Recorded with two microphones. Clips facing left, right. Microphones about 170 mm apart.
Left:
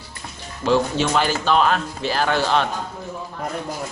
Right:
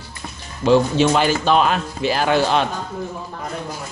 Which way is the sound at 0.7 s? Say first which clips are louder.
Right 4 dB; 20° right (ahead or behind).